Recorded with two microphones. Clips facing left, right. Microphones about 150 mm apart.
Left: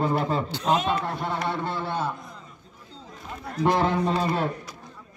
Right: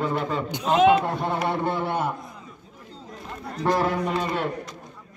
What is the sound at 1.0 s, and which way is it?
A man's voice, 20° right (ahead or behind).